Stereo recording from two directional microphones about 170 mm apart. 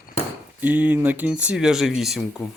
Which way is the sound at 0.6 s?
10° right (ahead or behind).